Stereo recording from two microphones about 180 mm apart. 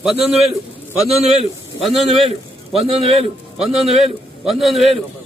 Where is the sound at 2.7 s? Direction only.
35° right (ahead or behind).